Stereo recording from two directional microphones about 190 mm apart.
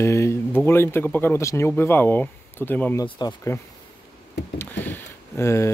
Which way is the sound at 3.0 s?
20° left (ahead or behind).